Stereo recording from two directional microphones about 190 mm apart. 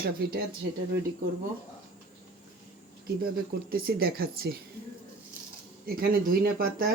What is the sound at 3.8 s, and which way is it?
Speech, 55° right (ahead or behind).